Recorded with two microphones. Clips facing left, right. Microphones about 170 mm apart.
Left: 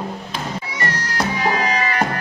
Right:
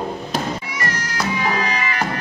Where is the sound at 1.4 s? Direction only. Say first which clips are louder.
Left 3 dB; 35° left (ahead or behind).